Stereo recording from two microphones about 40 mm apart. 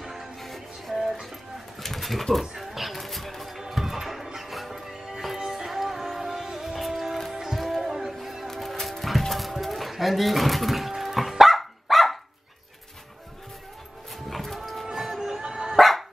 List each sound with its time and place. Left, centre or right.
0.0 s music: centre
0.4 s music: centre
1.8 s pigeon: centre
2.4 s music: centre
8.5 s a sound: centre
14.3 s music: centre
15.0 s music: centre
15.4 s dog: centre
15.7 s music: centre